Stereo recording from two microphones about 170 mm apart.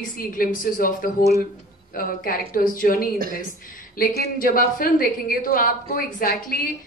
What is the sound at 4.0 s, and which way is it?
A woman's voice, 55° left (ahead or behind).